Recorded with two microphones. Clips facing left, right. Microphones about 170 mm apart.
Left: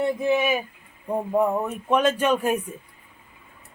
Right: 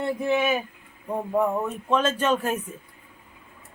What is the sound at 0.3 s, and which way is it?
Speech, 10° left (ahead or behind).